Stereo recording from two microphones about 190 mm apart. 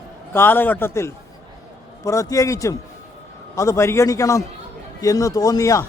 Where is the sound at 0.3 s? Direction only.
10° left (ahead or behind).